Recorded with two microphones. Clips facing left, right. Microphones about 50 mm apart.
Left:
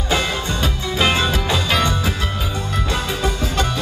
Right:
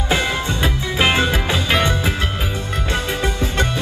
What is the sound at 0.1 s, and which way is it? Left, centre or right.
Music, right.